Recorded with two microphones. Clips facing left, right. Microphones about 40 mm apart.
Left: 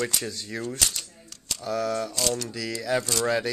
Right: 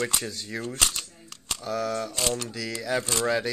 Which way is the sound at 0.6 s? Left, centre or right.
Right.